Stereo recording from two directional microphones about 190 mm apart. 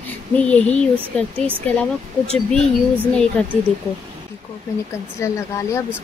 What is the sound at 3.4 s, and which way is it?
Speech, 5° left (ahead or behind).